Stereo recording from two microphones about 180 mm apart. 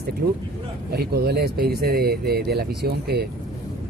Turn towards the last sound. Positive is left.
turn(degrees=-65)  # may be behind; listen again after turning